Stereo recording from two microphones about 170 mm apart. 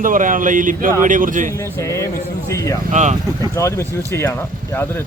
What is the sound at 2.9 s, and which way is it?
Speech, 45° right (ahead or behind).